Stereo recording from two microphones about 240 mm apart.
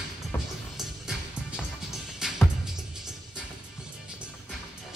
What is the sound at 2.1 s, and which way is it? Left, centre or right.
Music, centre.